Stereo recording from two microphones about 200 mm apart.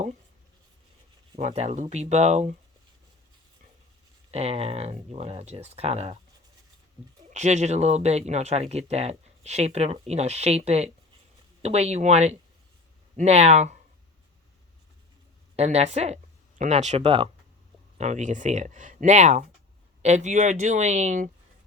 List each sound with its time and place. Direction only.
1.4 s speech: 35° right (ahead or behind)
4.3 s speech: 30° right (ahead or behind)
7.3 s speech: 35° right (ahead or behind)
15.5 s speech: 35° right (ahead or behind)